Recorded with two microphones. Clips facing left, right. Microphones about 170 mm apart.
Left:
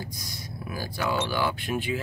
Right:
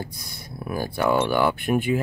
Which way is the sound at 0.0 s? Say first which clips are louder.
Right 2 dB; 60° right (ahead or behind).